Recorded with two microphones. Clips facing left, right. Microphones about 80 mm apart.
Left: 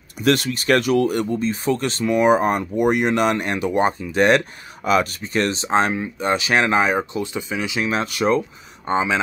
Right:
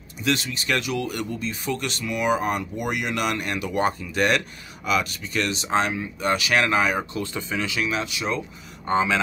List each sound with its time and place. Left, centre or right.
0.2 s speech: left
4.8 s speech: left; by 7.8 s centre
7.8 s speech: left
8.8 s speech: centre